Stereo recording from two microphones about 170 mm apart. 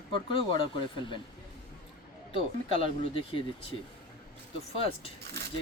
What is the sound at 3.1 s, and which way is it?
Speech, 35° left (ahead or behind).